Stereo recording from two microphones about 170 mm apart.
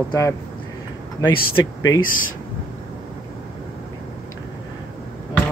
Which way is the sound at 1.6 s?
20° left (ahead or behind).